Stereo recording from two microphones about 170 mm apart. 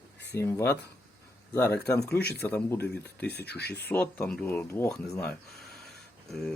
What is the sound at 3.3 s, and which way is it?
Speech, 75° left (ahead or behind).